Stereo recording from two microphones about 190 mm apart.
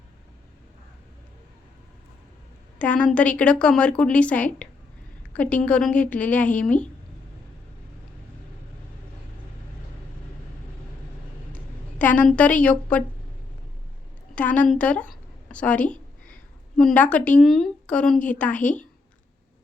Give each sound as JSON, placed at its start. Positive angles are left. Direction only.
{"t": 2.7, "sound": "a woman's voice", "side_deg": 5}
{"t": 11.5, "sound": "a woman's voice", "side_deg": 10}
{"t": 14.3, "sound": "a woman's voice", "side_deg": 5}